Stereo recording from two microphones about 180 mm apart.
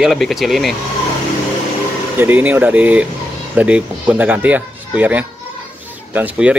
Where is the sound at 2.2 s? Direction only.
10° right (ahead or behind).